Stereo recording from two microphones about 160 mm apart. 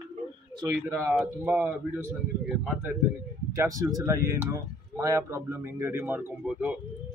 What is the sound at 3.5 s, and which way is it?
Speech, 20° right (ahead or behind).